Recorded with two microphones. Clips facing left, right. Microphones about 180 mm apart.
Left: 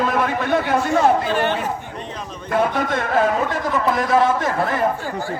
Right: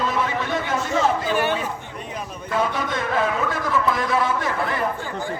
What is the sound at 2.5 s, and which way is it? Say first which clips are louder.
A man's voice: left 4 dB; 55° left (ahead or behind).